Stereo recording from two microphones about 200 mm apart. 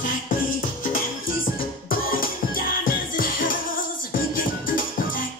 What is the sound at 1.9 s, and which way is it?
Music, 45° left (ahead or behind).